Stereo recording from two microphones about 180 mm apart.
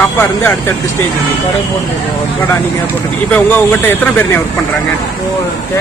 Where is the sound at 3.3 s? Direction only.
10° left (ahead or behind).